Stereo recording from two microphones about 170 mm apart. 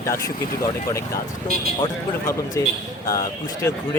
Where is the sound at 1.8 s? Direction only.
15° left (ahead or behind).